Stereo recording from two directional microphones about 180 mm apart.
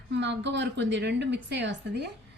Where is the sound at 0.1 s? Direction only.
75° right (ahead or behind).